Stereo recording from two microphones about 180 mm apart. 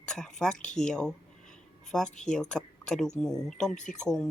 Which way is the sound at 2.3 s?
5° left (ahead or behind).